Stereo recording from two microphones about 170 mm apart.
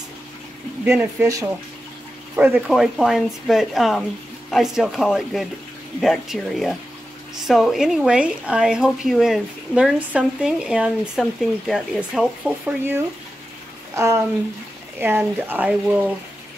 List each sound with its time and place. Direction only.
0.8 s speech: 15° right (ahead or behind)